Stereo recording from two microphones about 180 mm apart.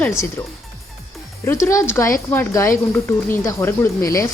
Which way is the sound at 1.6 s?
15° left (ahead or behind).